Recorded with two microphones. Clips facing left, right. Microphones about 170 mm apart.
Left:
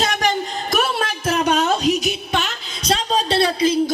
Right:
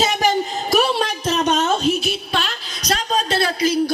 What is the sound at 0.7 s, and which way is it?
Music, centre (ahead or behind).